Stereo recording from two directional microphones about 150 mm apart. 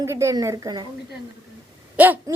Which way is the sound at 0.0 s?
20° right (ahead or behind).